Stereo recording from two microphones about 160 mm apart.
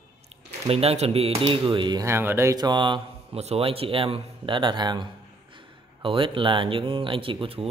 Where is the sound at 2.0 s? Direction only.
15° right (ahead or behind).